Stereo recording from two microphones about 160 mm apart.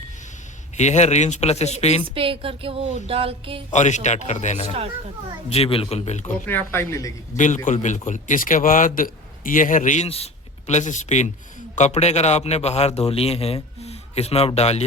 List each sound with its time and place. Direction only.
0.8 s a man's voice: 45° left (ahead or behind)
2.1 s a sound: 35° right (ahead or behind)
3.7 s a man's voice: 50° left (ahead or behind)
6.4 s speech: 10° left (ahead or behind)
7.3 s a man's voice: 50° left (ahead or behind)